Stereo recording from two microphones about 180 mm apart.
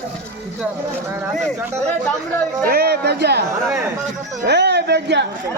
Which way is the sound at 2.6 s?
60° right (ahead or behind).